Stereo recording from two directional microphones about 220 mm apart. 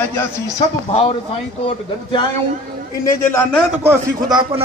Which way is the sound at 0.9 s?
25° left (ahead or behind).